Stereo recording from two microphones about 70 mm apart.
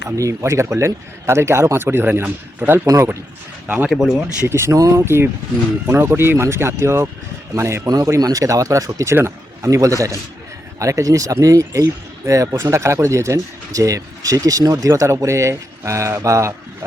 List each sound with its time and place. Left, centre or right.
0.2 s speech: right
2.8 s speech: right
3.8 s speech: centre
4.4 s speech: right
7.9 s speech: right
9.1 s speech: right
9.6 s speech: right